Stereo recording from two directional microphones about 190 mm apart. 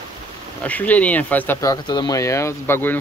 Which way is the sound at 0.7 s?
10° left (ahead or behind).